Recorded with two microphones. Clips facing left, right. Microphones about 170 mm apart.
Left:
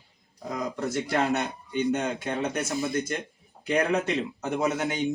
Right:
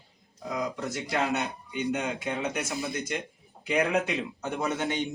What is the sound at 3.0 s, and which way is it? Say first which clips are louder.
Speech: left 4 dB; 50° left (ahead or behind).